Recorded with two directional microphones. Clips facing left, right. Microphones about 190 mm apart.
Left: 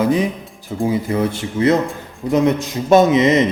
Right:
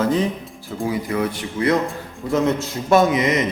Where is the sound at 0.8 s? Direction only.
30° left (ahead or behind).